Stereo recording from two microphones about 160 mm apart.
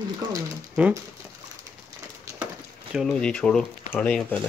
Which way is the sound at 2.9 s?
Centre (ahead or behind).